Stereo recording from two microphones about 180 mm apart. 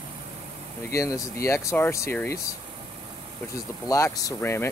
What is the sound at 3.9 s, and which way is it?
Speech, 20° left (ahead or behind).